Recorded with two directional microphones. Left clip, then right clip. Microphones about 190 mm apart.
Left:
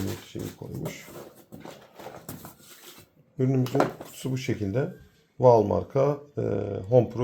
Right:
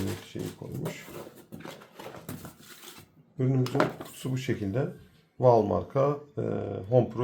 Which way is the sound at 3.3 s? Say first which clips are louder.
Left 3 dB; 45° left (ahead or behind).